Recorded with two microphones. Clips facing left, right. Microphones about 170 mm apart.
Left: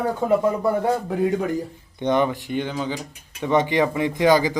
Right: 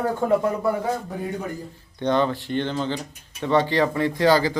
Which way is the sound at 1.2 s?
90° left.